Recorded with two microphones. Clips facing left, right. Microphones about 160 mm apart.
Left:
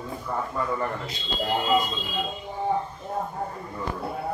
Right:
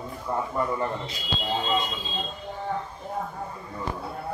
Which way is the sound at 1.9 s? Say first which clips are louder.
Left 2 dB; 20° right (ahead or behind).